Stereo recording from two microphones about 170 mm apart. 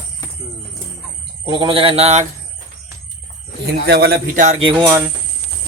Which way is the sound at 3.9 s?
65° right (ahead or behind).